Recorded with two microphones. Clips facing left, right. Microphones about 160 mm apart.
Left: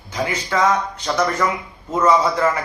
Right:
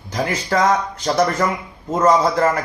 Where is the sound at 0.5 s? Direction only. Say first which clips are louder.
Right 2 dB; 45° right (ahead or behind).